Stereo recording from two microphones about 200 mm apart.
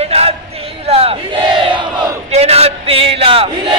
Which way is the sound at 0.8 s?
30° right (ahead or behind).